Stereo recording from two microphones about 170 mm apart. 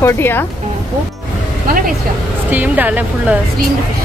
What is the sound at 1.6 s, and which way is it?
Speech, 55° right (ahead or behind).